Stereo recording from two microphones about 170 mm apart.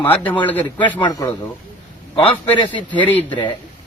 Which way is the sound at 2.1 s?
30° left (ahead or behind).